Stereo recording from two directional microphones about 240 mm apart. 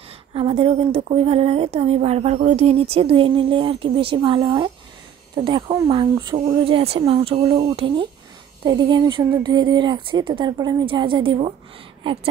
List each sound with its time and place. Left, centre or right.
0.3 s speech: right